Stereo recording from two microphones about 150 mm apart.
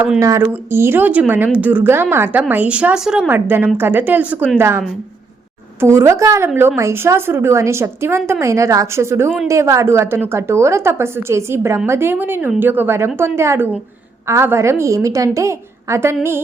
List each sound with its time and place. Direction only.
0.2 s a woman's voice: 20° right (ahead or behind)
5.8 s a woman's voice: 20° right (ahead or behind)